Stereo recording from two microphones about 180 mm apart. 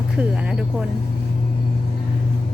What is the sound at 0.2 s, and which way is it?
Speech, 5° right (ahead or behind).